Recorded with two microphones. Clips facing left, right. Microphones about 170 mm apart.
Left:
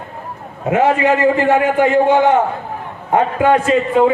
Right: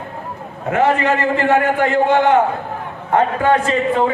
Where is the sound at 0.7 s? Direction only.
10° left (ahead or behind).